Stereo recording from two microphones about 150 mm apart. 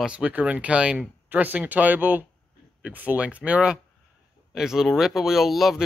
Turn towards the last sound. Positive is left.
turn(degrees=0)  # may be behind; listen again after turning